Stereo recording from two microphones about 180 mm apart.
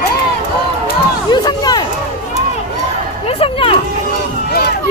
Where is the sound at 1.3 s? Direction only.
25° left (ahead or behind).